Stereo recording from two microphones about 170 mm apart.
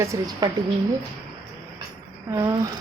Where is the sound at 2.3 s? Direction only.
20° right (ahead or behind).